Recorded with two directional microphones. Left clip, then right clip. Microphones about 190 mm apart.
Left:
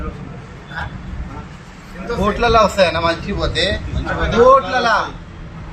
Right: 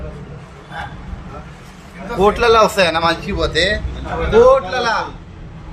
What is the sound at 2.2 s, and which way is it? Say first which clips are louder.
A man's voice: right 2 dB; 65° right (ahead or behind).